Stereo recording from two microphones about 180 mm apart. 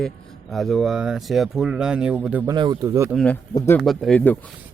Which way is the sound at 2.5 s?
25° right (ahead or behind).